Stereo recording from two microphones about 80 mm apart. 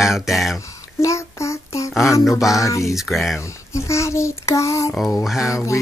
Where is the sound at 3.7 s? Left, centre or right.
Left.